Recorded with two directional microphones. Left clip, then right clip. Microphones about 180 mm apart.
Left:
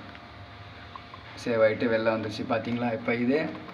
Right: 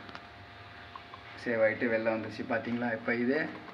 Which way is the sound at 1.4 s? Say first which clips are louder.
Left 5 dB; 5° right (ahead or behind).